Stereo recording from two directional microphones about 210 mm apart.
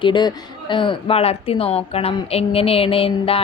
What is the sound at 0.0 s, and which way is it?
Speech, 20° left (ahead or behind).